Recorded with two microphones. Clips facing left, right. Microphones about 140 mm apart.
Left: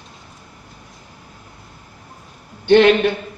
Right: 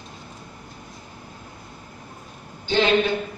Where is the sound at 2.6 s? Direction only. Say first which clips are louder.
Left 10 dB; 60° left (ahead or behind).